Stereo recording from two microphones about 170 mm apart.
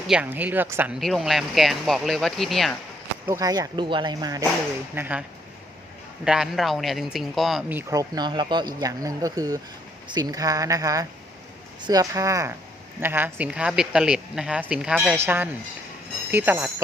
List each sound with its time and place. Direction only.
0.1 s speech: 10° right (ahead or behind)
0.9 s speech: centre (ahead or behind)
3.2 s speech: 20° right (ahead or behind)
4.9 s speech: 10° right (ahead or behind)
6.2 s speech: 5° right (ahead or behind)
7.7 s speech: 15° right (ahead or behind)